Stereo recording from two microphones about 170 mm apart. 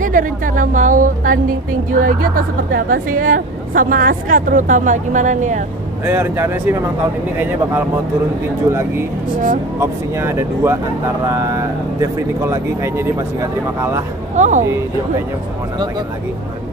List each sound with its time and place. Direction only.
0.0 s speech: 50° right (ahead or behind)
6.0 s speech: 15° right (ahead or behind)
9.8 s speech: 15° right (ahead or behind)
14.3 s speech: 45° right (ahead or behind)
14.6 s speech: 15° right (ahead or behind)